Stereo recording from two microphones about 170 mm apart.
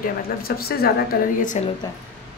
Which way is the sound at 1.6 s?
40° left (ahead or behind).